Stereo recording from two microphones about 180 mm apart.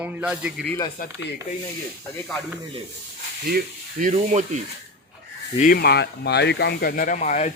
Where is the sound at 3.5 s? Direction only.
50° right (ahead or behind).